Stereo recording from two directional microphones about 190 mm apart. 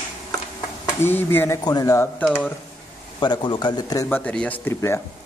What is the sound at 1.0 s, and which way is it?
Speech, 10° left (ahead or behind).